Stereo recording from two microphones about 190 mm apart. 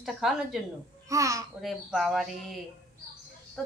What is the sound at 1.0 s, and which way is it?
Speech, 15° right (ahead or behind).